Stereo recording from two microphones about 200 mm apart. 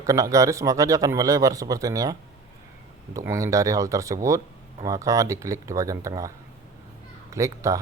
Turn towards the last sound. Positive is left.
turn(degrees=-15)  # may be behind; listen again after turning